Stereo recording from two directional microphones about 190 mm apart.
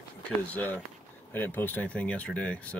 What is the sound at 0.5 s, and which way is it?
Speech, 10° left (ahead or behind).